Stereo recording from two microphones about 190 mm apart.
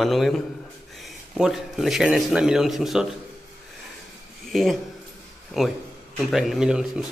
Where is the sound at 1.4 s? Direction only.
Centre (ahead or behind).